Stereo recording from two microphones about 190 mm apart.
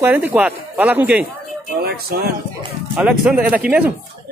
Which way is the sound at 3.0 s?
5° right (ahead or behind).